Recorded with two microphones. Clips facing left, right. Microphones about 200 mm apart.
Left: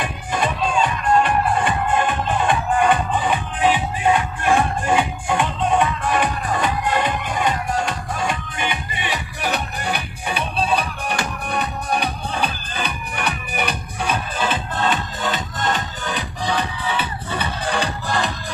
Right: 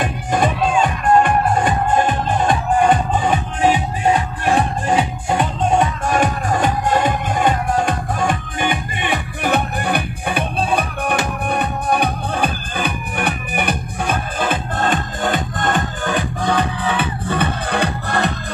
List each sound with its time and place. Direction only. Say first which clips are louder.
0.0 s music: right 5 dB; 50° right (ahead or behind)